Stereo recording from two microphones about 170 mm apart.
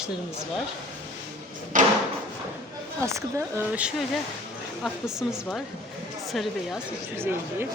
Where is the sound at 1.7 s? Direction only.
50° right (ahead or behind).